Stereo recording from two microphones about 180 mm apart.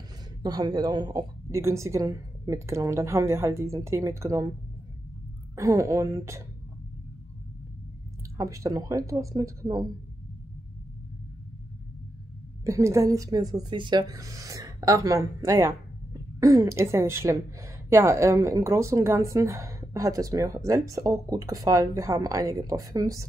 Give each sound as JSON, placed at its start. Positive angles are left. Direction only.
{"t": 0.4, "sound": "speech", "side_deg": -20}
{"t": 5.6, "sound": "speech", "side_deg": -15}
{"t": 8.4, "sound": "speech", "side_deg": -20}
{"t": 12.6, "sound": "speech", "side_deg": -15}